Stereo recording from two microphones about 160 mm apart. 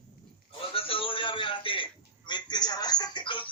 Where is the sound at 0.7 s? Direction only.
35° left (ahead or behind).